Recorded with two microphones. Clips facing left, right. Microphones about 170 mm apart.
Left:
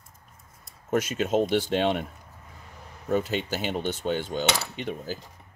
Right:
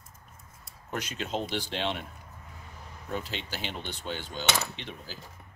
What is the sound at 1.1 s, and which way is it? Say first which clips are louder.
Speech: left 8 dB; 50° left (ahead or behind).